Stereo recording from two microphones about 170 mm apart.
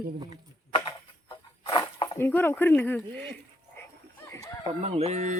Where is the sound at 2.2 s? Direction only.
15° left (ahead or behind).